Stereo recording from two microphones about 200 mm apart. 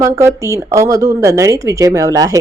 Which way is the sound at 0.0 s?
15° right (ahead or behind).